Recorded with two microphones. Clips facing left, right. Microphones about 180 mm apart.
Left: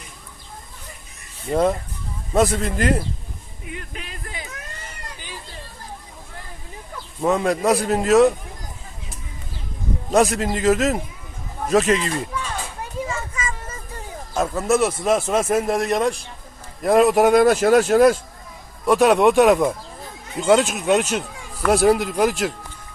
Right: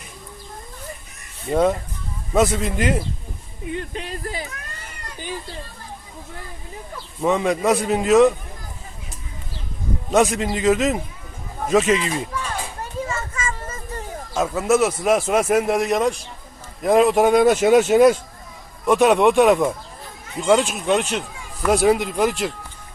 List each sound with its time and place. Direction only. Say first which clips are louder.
2.3 s a man's voice: even; centre (ahead or behind)
3.8 s speech: right 8 dB; 30° right (ahead or behind)
7.2 s a man's voice: even; centre (ahead or behind)
10.1 s a man's voice: even; centre (ahead or behind)
13.1 s children playing: right 1 dB; 10° left (ahead or behind)
14.3 s a man's voice: right 1 dB; 5° right (ahead or behind)